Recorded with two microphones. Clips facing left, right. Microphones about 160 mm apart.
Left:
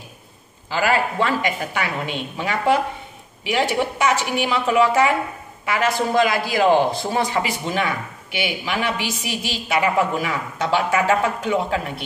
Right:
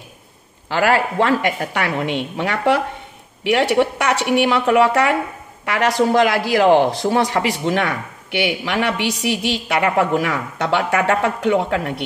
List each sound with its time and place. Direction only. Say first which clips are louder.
0.7 s speech: right 3 dB; 70° right (ahead or behind)